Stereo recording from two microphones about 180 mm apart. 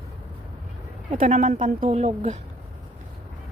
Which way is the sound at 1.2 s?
40° right (ahead or behind).